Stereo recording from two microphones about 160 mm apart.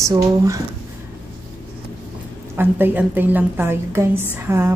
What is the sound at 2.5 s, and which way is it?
A woman's voice, 15° right (ahead or behind).